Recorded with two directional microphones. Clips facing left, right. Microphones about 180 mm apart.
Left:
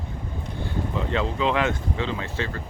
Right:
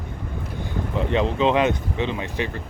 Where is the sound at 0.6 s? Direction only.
20° right (ahead or behind).